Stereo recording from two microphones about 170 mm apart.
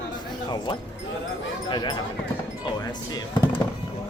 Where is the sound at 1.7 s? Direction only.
25° left (ahead or behind).